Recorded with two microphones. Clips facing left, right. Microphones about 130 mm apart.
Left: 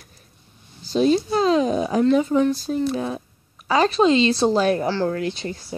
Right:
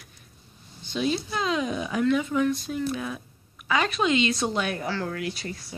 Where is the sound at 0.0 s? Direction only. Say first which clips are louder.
Left 2 dB; 40° left (ahead or behind).